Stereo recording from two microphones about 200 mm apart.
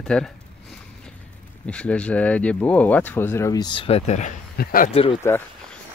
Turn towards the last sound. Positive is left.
turn(degrees=30)  # may be behind; listen again after turning